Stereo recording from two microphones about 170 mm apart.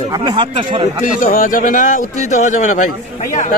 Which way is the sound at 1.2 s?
50° left (ahead or behind).